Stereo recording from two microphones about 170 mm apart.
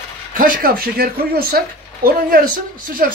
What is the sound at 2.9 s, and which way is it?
Speech, 55° right (ahead or behind).